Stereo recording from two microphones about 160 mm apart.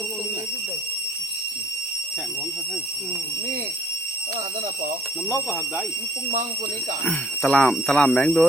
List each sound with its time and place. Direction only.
5.3 s speech: 15° left (ahead or behind)
7.0 s speech: 5° left (ahead or behind)